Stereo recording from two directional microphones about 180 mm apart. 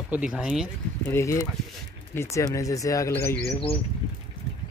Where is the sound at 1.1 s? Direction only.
15° left (ahead or behind).